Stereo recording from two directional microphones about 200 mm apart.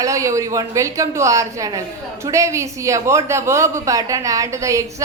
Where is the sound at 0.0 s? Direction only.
15° right (ahead or behind).